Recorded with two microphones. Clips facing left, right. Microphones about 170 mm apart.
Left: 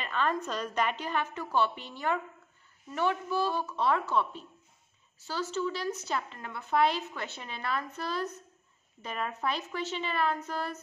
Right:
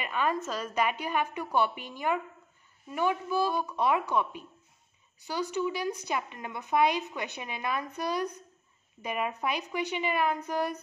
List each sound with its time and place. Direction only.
0.0 s a woman's voice: 10° right (ahead or behind)